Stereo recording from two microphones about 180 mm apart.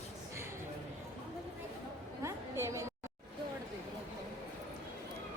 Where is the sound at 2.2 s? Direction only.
15° right (ahead or behind).